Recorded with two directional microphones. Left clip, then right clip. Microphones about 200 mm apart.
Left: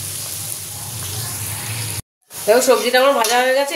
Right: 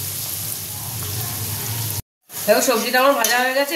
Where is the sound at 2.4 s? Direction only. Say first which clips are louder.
Left 4 dB; 30° left (ahead or behind).